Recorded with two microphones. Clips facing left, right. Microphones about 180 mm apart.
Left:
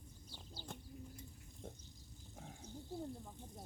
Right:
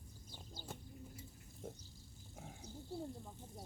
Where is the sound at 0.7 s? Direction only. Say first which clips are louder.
Left 1 dB; 5° right (ahead or behind).